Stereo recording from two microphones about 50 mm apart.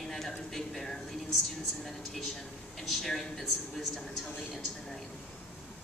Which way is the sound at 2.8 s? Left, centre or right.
Centre.